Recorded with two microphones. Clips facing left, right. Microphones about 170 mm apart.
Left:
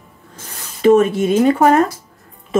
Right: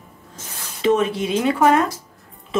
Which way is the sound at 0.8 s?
45° left (ahead or behind).